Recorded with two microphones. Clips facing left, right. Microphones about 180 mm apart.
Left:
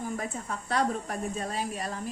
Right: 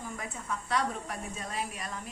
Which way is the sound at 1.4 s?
35° left (ahead or behind).